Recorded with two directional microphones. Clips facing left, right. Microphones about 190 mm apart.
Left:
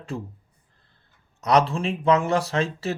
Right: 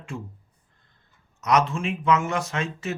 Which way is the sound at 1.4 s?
35° left (ahead or behind).